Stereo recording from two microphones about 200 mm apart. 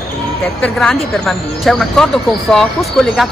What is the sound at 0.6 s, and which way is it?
Speech, 5° left (ahead or behind).